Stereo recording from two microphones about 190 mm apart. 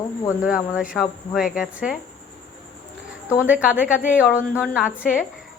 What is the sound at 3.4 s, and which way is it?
A woman's voice, 5° right (ahead or behind).